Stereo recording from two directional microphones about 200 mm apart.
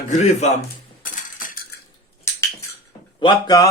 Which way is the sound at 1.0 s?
40° left (ahead or behind).